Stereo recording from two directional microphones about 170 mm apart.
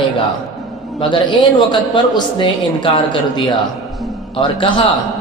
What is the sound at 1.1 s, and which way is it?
Speech, 30° left (ahead or behind).